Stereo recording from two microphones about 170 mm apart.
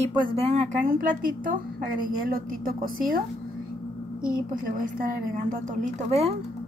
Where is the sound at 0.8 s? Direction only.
55° right (ahead or behind).